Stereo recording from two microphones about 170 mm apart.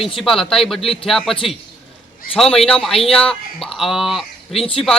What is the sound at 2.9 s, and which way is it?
Speech, 35° left (ahead or behind).